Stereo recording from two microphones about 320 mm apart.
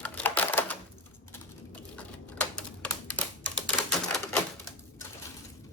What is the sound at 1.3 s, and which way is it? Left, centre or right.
Typing, centre.